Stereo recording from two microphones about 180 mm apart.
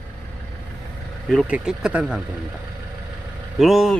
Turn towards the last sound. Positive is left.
turn(degrees=0)  # may be behind; listen again after turning